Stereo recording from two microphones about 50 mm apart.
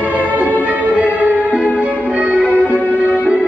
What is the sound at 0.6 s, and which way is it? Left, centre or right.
Music, right.